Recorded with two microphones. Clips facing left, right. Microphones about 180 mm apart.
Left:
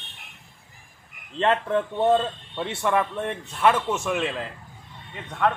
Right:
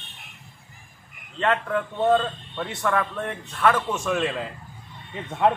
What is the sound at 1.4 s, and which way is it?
A man's voice, 25° left (ahead or behind).